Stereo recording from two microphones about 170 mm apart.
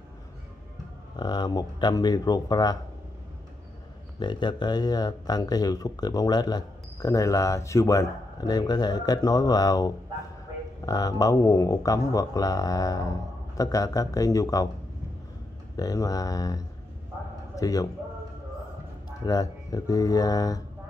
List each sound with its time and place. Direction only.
1.1 s speech: 25° left (ahead or behind)
4.2 s speech: 25° left (ahead or behind)
15.7 s a man's voice: 20° left (ahead or behind)
19.2 s speech: 20° left (ahead or behind)